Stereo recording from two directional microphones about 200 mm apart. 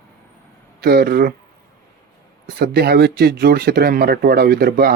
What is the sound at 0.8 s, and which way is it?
Speech, 50° right (ahead or behind).